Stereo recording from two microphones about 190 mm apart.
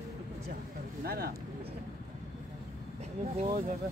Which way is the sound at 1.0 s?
55° right (ahead or behind).